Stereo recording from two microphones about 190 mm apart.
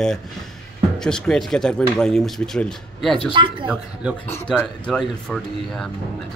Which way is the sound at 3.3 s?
25° right (ahead or behind).